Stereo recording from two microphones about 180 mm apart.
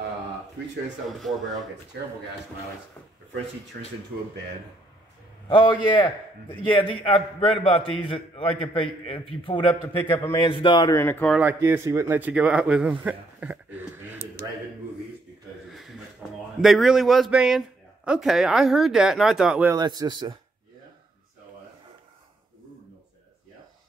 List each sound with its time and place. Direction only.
5.5 s a man's voice: 25° left (ahead or behind)
10.0 s a man's voice: 10° left (ahead or behind)
10.3 s a man's voice: 25° left (ahead or behind); by 11.3 s 10° left (ahead or behind)
11.3 s speech: 10° right (ahead or behind)
13.4 s a sound: 10° right (ahead or behind)
15.7 s a man's voice: centre (ahead or behind)
19.7 s a man's voice: 20° right (ahead or behind)